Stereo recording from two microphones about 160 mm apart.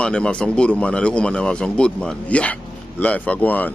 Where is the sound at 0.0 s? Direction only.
5° left (ahead or behind).